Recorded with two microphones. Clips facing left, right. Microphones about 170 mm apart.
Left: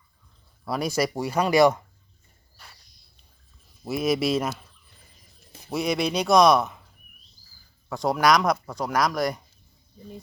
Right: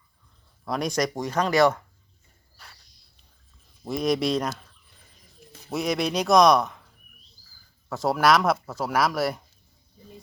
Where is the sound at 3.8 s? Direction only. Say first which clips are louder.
Even; 5° left (ahead or behind).